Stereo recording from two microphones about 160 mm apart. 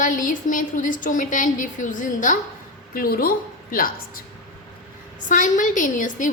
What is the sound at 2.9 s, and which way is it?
Speech, 65° left (ahead or behind).